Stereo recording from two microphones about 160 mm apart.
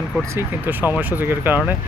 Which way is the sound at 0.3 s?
10° right (ahead or behind).